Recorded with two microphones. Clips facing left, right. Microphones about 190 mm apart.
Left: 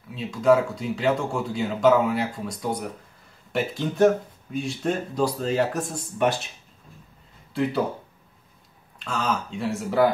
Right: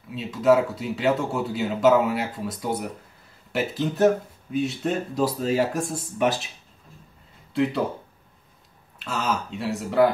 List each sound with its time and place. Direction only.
0.1 s speech: centre (ahead or behind)
9.0 s speech: 5° right (ahead or behind)